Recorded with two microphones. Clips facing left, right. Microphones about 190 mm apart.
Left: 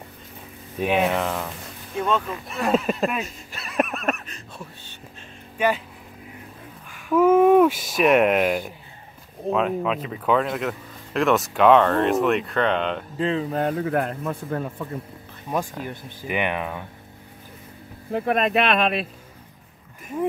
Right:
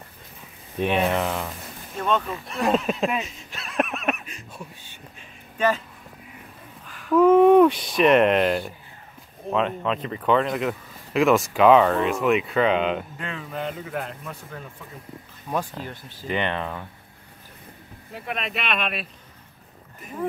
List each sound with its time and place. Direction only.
0.7 s speech: 5° left (ahead or behind)
6.9 s speech: 5° left (ahead or behind)
13.2 s speech: 30° left (ahead or behind)
13.6 s a man's voice: 55° left (ahead or behind)
15.5 s speech: 10° left (ahead or behind)
18.1 s speech: 50° left (ahead or behind)